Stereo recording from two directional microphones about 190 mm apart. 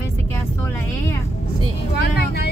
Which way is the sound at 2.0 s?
60° left (ahead or behind).